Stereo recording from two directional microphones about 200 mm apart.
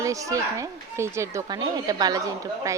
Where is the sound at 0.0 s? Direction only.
15° right (ahead or behind).